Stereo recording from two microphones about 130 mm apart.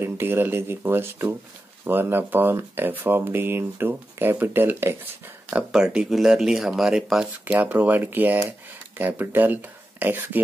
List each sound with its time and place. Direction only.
0.0 s speech: 15° right (ahead or behind)
5.5 s speech: 5° right (ahead or behind)